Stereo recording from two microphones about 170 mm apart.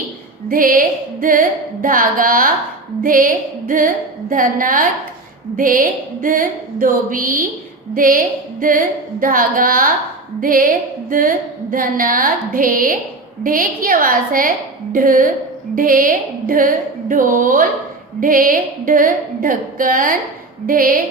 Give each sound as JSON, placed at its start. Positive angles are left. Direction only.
{"t": 0.4, "sound": "a woman's voice", "side_deg": -55}
{"t": 9.2, "sound": "a woman's voice", "side_deg": -55}